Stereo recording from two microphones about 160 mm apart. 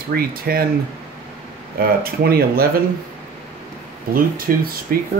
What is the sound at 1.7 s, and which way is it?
Speech, 70° right (ahead or behind).